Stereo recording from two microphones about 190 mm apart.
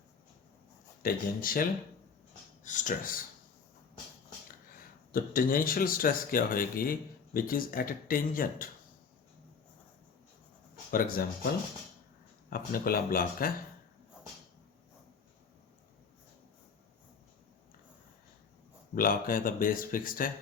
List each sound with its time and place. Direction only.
1.0 s speech: 50° left (ahead or behind)
2.6 s speech: 40° left (ahead or behind)
5.1 s speech: 50° left (ahead or behind)
10.9 s speech: 50° left (ahead or behind)
12.5 s speech: 50° left (ahead or behind)
18.9 s speech: 45° left (ahead or behind)